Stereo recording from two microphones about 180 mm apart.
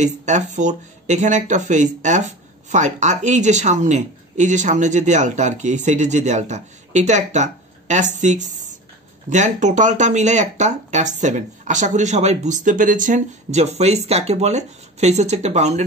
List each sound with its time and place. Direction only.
0.0 s speech: 40° right (ahead or behind)